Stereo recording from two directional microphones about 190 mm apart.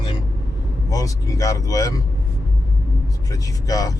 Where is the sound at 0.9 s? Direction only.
20° left (ahead or behind).